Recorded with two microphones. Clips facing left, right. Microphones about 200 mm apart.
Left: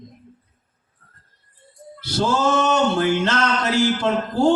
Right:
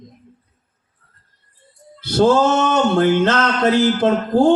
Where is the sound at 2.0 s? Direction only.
55° right (ahead or behind).